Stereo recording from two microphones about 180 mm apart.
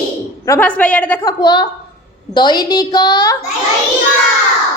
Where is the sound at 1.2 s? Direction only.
25° left (ahead or behind).